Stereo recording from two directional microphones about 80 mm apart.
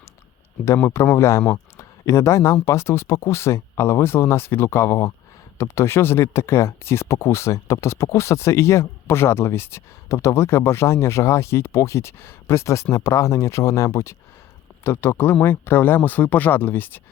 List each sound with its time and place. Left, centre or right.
1.1 s speech: left